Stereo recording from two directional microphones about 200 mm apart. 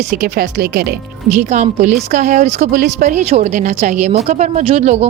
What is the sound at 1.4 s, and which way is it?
A woman's voice, 35° right (ahead or behind).